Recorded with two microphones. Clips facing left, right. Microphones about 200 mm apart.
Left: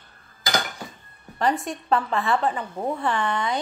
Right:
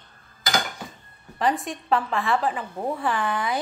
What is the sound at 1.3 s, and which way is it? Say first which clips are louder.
A woman's voice: left 1 dB; centre (ahead or behind).